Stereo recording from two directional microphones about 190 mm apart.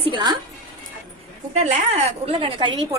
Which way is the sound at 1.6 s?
35° right (ahead or behind).